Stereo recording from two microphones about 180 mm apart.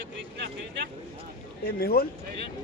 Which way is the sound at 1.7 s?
55° left (ahead or behind).